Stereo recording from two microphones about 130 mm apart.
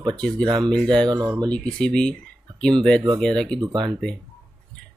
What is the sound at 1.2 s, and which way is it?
Speech, 25° right (ahead or behind).